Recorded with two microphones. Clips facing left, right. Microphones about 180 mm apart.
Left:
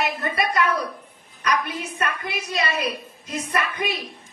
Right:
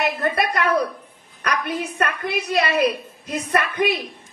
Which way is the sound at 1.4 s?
60° right (ahead or behind).